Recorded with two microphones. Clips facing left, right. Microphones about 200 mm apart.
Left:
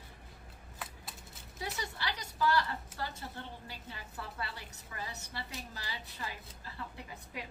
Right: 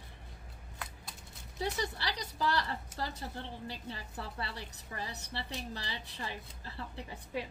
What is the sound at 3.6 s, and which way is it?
A woman's voice, 35° right (ahead or behind).